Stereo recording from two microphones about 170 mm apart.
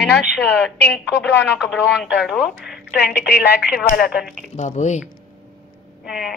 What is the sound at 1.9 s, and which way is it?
Speech, 5° right (ahead or behind).